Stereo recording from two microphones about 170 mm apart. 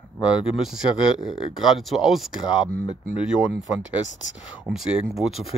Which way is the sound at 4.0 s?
90° left.